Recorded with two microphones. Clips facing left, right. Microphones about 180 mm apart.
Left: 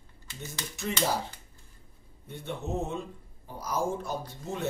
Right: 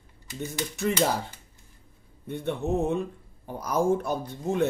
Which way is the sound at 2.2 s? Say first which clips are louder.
Right 7 dB; 60° right (ahead or behind).